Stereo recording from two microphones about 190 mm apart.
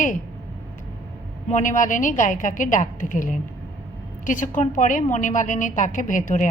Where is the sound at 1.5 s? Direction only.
45° left (ahead or behind).